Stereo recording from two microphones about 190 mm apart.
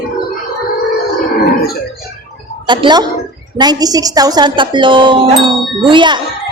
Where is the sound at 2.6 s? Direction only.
25° right (ahead or behind).